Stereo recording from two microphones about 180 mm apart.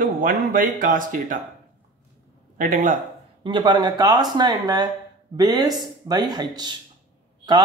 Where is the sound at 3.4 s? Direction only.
25° right (ahead or behind).